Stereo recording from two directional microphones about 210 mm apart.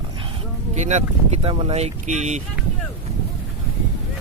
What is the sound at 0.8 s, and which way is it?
Speech, 35° right (ahead or behind).